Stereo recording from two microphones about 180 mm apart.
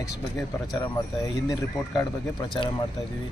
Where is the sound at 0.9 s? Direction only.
20° left (ahead or behind).